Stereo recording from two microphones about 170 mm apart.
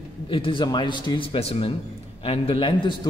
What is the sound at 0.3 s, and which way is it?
A man's voice, 30° left (ahead or behind).